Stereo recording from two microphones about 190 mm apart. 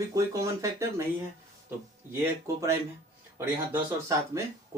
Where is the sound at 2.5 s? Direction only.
15° right (ahead or behind).